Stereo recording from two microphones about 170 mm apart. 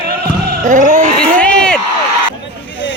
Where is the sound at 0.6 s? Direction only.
50° right (ahead or behind).